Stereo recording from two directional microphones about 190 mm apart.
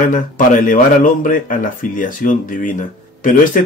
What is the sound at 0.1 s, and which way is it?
Speech, 45° left (ahead or behind).